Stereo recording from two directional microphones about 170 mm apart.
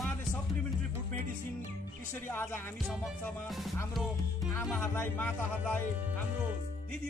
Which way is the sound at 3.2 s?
Centre (ahead or behind).